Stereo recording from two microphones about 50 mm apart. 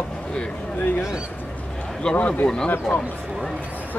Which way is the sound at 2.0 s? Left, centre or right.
Centre.